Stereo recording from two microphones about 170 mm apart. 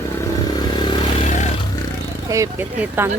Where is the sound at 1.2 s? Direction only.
45° left (ahead or behind).